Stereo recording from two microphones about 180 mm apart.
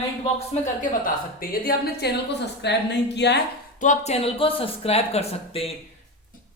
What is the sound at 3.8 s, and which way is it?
Speech, 40° left (ahead or behind).